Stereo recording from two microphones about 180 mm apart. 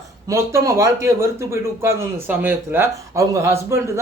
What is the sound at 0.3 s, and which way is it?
Speech, 15° right (ahead or behind).